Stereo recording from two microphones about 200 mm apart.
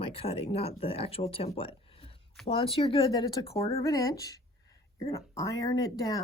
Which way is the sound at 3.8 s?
15° left (ahead or behind).